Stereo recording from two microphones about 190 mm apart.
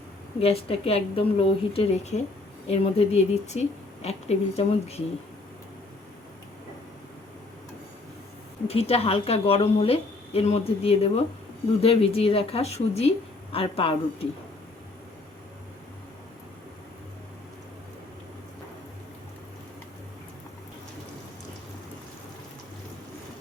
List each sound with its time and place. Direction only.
0.3 s a woman's voice: 30° left (ahead or behind)
8.6 s a woman's voice: 30° left (ahead or behind)